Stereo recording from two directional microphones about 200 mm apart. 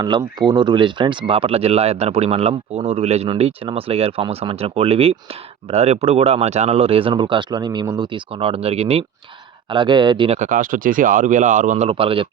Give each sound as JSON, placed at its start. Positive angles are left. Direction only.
{"t": 0.0, "sound": "speech", "side_deg": -20}